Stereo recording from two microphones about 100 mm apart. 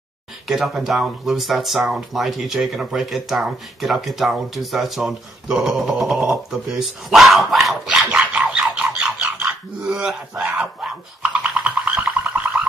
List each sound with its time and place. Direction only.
0.5 s speech: centre (ahead or behind)
8.3 s frog: 10° right (ahead or behind)
9.4 s speech: 10° right (ahead or behind)
11.4 s music: 15° right (ahead or behind)